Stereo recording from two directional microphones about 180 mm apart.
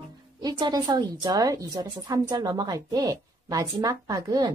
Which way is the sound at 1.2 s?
20° right (ahead or behind).